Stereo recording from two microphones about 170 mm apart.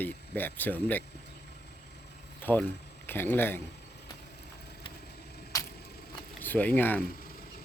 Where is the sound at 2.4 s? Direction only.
10° left (ahead or behind).